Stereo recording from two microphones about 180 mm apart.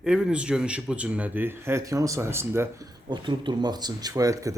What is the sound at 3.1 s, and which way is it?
Speech, 25° right (ahead or behind).